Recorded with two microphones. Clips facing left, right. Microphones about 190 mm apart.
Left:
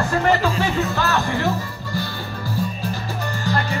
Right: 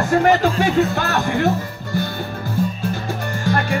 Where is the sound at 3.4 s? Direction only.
55° right (ahead or behind).